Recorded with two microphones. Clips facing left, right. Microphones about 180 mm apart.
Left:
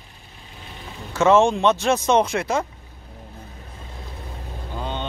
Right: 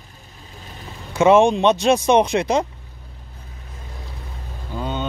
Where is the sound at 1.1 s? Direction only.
15° right (ahead or behind).